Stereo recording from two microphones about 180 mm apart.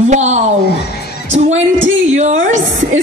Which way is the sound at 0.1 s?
40° right (ahead or behind).